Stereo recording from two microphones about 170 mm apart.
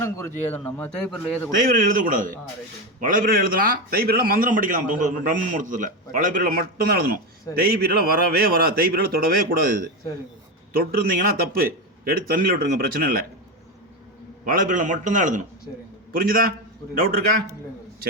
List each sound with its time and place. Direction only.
0.0 s a man's voice: 15° left (ahead or behind)
1.6 s a man's voice: 55° right (ahead or behind)
14.4 s a man's voice: 55° right (ahead or behind)